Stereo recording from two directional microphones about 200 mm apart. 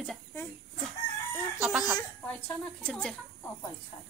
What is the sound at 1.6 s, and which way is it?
Speech, 5° right (ahead or behind).